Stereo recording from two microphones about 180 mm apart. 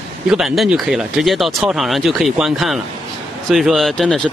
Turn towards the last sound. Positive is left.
turn(degrees=0)  # may be behind; listen again after turning